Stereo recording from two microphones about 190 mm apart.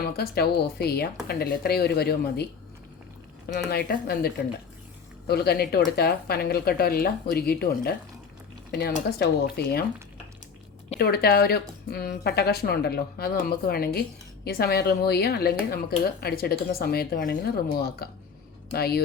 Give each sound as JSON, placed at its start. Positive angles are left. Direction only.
{"t": 0.0, "sound": "a woman's voice", "side_deg": 55}
{"t": 3.7, "sound": "a woman's voice", "side_deg": 55}
{"t": 5.3, "sound": "a woman's voice", "side_deg": 55}
{"t": 9.0, "sound": "a woman's voice", "side_deg": 55}
{"t": 10.9, "sound": "a woman's voice", "side_deg": 55}